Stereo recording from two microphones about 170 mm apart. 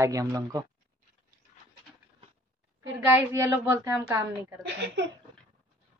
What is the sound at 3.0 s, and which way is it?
Speech, 15° right (ahead or behind).